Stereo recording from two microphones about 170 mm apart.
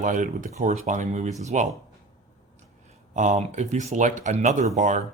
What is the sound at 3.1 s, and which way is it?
Speech, 45° right (ahead or behind).